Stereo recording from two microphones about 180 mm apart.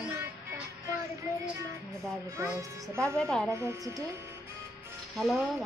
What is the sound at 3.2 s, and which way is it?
Child singing, 5° left (ahead or behind).